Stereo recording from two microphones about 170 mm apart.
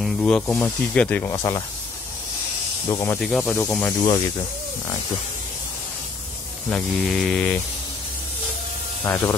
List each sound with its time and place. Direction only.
0.0 s speech: 5° left (ahead or behind)
1.3 s speech: 20° left (ahead or behind)
2.9 s speech: 15° left (ahead or behind)
3.2 s cattle: centre (ahead or behind)
6.7 s cattle: 5° left (ahead or behind)
9.0 s speech: 15° left (ahead or behind)